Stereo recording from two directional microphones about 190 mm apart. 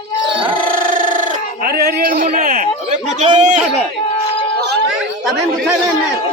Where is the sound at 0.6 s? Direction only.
45° right (ahead or behind).